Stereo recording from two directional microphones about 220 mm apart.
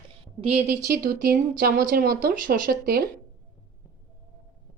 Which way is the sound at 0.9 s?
40° right (ahead or behind).